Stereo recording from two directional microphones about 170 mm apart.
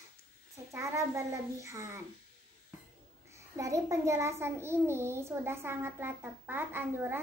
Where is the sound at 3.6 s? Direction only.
20° right (ahead or behind).